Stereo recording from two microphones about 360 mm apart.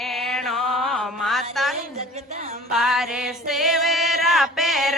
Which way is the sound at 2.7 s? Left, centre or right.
Centre.